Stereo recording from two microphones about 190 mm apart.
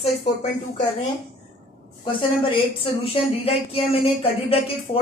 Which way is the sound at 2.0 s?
30° left (ahead or behind).